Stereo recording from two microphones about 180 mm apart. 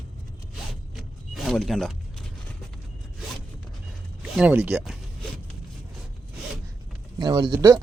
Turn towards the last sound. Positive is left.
turn(degrees=-15)  # may be behind; listen again after turning